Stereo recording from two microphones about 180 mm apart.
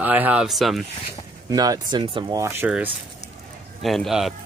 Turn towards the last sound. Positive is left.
turn(degrees=0)  # may be behind; listen again after turning